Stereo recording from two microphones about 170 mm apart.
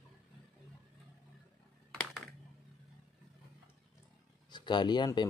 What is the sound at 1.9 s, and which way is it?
Computer keyboard, centre (ahead or behind).